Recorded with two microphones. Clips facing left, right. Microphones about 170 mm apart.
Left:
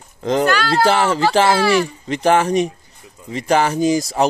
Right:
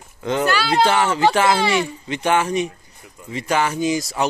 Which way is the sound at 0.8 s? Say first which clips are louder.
Even; 35° left (ahead or behind).